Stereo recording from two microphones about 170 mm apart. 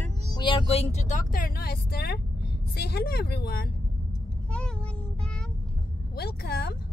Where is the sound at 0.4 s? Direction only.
30° left (ahead or behind); by 2.1 s 65° left (ahead or behind).